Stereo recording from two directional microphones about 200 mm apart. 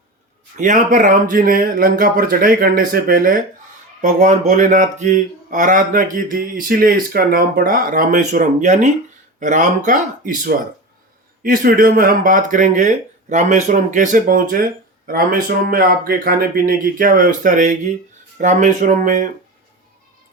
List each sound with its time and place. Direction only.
0.5 s a man's voice: 40° right (ahead or behind)